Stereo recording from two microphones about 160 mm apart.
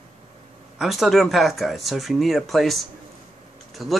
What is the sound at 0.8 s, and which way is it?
Speech, centre (ahead or behind).